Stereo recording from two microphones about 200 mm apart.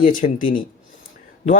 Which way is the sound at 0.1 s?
45° left (ahead or behind).